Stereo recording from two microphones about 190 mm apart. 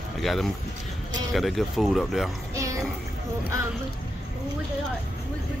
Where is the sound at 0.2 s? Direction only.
Centre (ahead or behind).